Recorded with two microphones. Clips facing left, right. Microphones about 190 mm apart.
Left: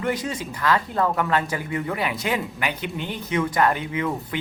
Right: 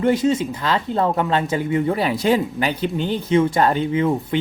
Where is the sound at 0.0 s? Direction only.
25° right (ahead or behind).